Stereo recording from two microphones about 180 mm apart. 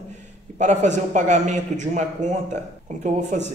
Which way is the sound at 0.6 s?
40° right (ahead or behind).